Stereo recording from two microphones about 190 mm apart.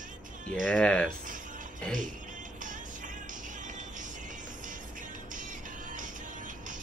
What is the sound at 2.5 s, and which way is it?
Music, 45° right (ahead or behind).